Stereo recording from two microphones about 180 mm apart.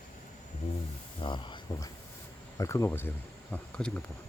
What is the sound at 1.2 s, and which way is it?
Speech, 25° left (ahead or behind).